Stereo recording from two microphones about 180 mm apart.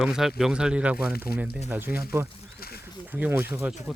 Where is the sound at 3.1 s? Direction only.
10° right (ahead or behind).